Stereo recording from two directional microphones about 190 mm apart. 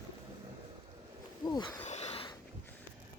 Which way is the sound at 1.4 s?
20° left (ahead or behind).